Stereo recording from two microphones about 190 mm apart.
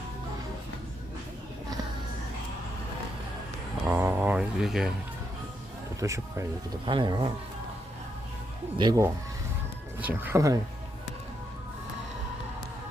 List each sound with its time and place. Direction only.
3.8 s a sound: 10° right (ahead or behind)
6.0 s speech: 15° right (ahead or behind)
8.8 s speech: 20° right (ahead or behind)
10.0 s speech: 10° right (ahead or behind)